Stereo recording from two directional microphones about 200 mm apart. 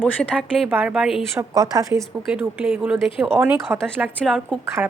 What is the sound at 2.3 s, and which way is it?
Speech, 5° right (ahead or behind).